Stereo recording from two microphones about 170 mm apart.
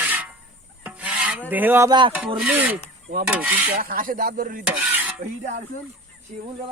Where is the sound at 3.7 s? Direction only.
55° right (ahead or behind).